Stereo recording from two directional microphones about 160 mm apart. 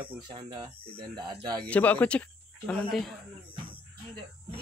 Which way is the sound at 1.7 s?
10° left (ahead or behind).